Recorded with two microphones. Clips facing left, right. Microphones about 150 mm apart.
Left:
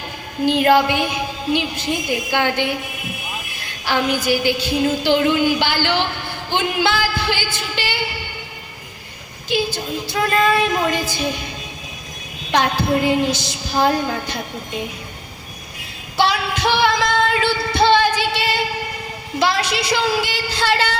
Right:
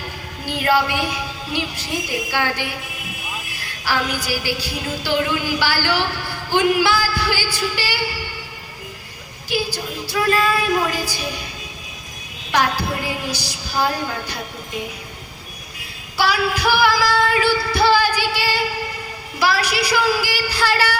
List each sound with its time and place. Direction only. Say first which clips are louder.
0.4 s a woman's voice: left 5 dB; 20° left (ahead or behind)
3.6 s a sound: left 3 dB; 20° left (ahead or behind)
4.3 s a woman's voice: left 6 dB; 20° left (ahead or behind)
9.7 s a woman's voice: left 1 dB; 25° left (ahead or behind)
12.5 s a woman's voice: left 3 dB; 25° left (ahead or behind)
16.1 s female singing: left 1 dB; 25° left (ahead or behind)
19.4 s a woman's voice: even; 25° left (ahead or behind)